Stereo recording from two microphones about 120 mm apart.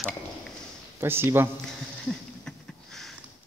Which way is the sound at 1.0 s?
20° right (ahead or behind).